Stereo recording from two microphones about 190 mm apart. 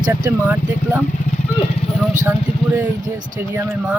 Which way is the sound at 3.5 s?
10° right (ahead or behind).